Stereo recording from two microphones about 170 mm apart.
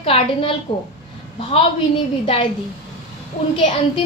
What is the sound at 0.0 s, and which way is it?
Speech, 35° left (ahead or behind).